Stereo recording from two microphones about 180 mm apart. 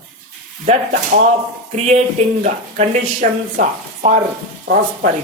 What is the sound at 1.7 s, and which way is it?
Speech, 40° right (ahead or behind).